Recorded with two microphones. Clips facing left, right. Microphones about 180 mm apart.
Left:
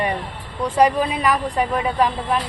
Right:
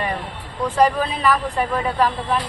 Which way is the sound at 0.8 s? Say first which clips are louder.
Left 1 dB; 10° left (ahead or behind).